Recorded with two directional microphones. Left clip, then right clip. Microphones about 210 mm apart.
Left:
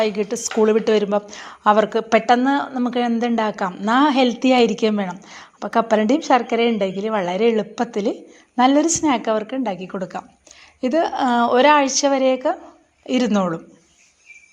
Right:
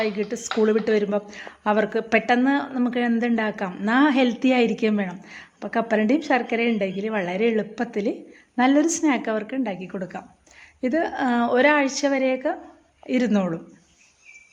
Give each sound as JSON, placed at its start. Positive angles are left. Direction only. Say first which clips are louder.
{"t": 0.0, "sound": "a woman's voice", "louder": "left 5 dB", "side_deg": 10}